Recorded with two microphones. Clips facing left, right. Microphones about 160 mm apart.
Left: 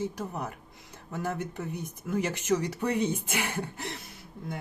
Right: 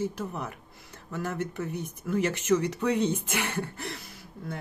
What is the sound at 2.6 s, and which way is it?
A woman's voice, 10° left (ahead or behind).